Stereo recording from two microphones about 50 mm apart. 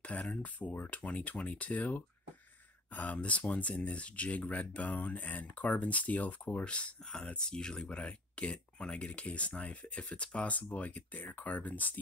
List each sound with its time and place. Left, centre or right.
0.0 s speech: left
6.6 s speech: left